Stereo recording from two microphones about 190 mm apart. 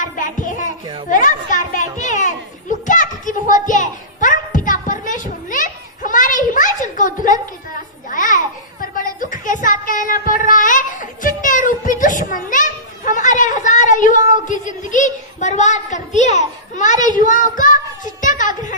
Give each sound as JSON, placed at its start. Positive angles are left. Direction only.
{"t": 0.0, "sound": "music", "side_deg": 45}
{"t": 1.1, "sound": "children playing", "side_deg": 45}
{"t": 8.1, "sound": "a sound", "side_deg": 45}